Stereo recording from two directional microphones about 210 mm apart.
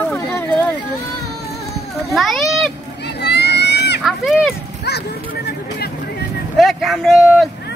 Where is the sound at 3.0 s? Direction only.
50° left (ahead or behind).